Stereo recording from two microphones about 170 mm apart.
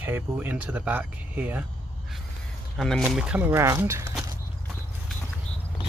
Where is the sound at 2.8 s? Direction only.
5° left (ahead or behind); by 4.2 s 20° right (ahead or behind).